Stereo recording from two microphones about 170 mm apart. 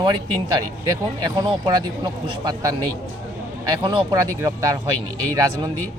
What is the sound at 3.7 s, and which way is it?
Speech, 25° right (ahead or behind).